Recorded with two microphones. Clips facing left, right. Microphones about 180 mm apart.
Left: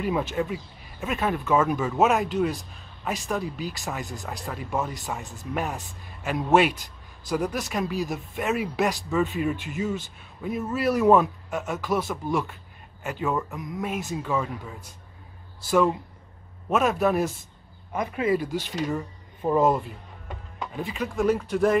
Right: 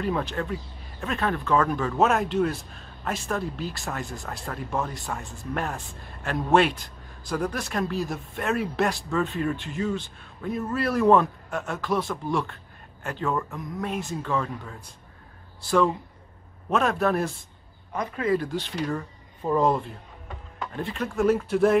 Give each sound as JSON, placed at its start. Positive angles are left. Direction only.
{"t": 0.0, "sound": "a man's voice", "side_deg": 5}
{"t": 16.6, "sound": "a man's voice", "side_deg": 5}
{"t": 17.9, "sound": "speech", "side_deg": 20}
{"t": 18.4, "sound": "a man's voice", "side_deg": 5}
{"t": 20.8, "sound": "a man's voice", "side_deg": 0}